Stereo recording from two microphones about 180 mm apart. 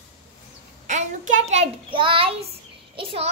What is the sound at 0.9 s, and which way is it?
A child's voice, 45° right (ahead or behind).